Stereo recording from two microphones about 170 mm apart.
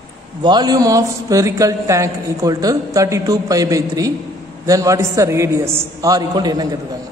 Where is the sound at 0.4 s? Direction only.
25° right (ahead or behind).